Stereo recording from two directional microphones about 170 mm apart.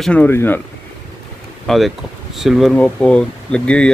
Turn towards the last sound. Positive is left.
turn(degrees=5)  # may be behind; listen again after turning